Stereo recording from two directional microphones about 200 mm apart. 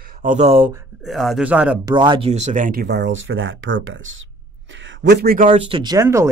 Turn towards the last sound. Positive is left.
turn(degrees=-15)  # may be behind; listen again after turning